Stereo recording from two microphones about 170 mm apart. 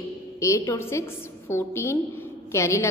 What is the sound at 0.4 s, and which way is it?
A woman's voice, 15° left (ahead or behind).